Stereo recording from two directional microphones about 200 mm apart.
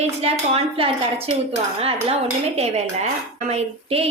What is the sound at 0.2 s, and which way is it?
Speech, 30° right (ahead or behind).